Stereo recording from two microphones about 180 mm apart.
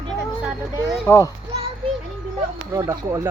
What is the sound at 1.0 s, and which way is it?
Speech, 15° left (ahead or behind).